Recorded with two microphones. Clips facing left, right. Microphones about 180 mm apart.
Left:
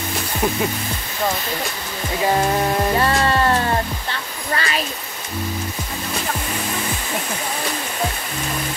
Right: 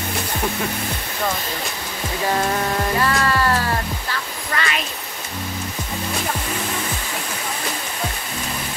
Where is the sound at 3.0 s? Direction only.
25° left (ahead or behind).